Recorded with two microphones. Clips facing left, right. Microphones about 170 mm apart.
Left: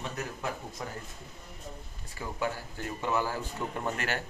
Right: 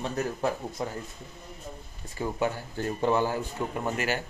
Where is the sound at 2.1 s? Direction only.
30° right (ahead or behind).